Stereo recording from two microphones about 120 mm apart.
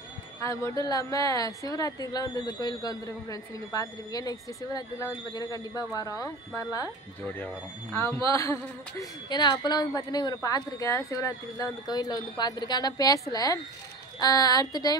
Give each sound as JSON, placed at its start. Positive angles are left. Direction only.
{"t": 0.4, "sound": "a woman's voice", "side_deg": 25}
{"t": 7.3, "sound": "speech", "side_deg": 15}
{"t": 8.3, "sound": "a woman's voice", "side_deg": 25}